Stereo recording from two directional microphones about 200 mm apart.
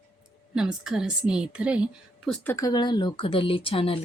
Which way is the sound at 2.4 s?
15° left (ahead or behind).